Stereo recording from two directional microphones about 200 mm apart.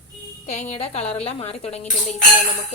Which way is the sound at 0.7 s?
30° left (ahead or behind).